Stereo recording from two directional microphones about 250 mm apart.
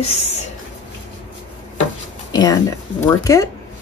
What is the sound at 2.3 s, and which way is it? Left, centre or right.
Speech, centre.